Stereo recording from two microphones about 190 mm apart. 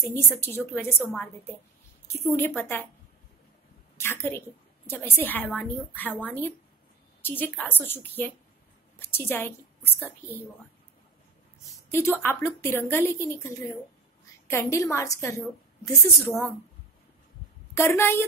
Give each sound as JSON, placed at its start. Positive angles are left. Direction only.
{"t": 0.0, "sound": "a woman's voice", "side_deg": 15}
{"t": 2.3, "sound": "a woman's voice", "side_deg": 10}
{"t": 4.0, "sound": "a woman's voice", "side_deg": 10}
{"t": 11.9, "sound": "a woman's voice", "side_deg": 10}
{"t": 17.7, "sound": "a woman's voice", "side_deg": 15}